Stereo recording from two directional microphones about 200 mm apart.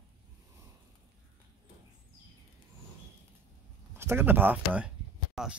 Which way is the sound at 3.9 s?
10° right (ahead or behind).